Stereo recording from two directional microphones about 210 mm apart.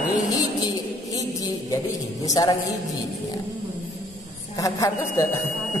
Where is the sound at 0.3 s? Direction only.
15° left (ahead or behind).